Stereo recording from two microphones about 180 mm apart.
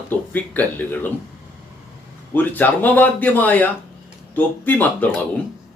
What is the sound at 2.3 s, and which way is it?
Speech, 10° left (ahead or behind).